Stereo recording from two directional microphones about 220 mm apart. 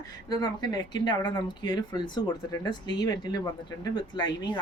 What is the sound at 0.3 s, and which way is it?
A woman's voice, 20° left (ahead or behind).